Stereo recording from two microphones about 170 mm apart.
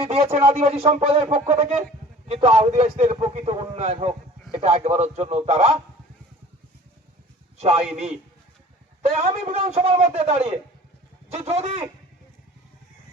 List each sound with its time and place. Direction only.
0.1 s a man's voice: 35° right (ahead or behind)
7.6 s a man's voice: 40° right (ahead or behind)
9.0 s a man's voice: 40° right (ahead or behind)